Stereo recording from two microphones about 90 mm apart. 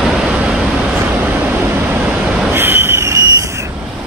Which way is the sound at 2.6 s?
25° right (ahead or behind).